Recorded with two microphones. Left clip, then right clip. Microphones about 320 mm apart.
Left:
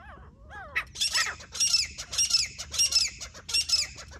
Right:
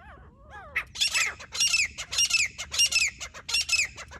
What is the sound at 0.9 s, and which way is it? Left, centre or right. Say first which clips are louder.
Bird: right 3 dB; centre.